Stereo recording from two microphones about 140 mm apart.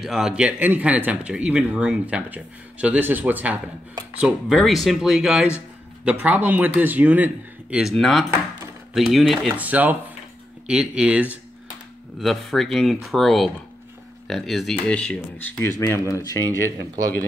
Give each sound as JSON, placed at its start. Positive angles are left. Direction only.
{"t": 0.0, "sound": "speech", "side_deg": -5}
{"t": 4.6, "sound": "speech", "side_deg": 0}
{"t": 7.7, "sound": "speech", "side_deg": 0}
{"t": 9.6, "sound": "speech", "side_deg": -10}
{"t": 15.8, "sound": "speech", "side_deg": 25}
{"t": 16.4, "sound": "speech", "side_deg": -25}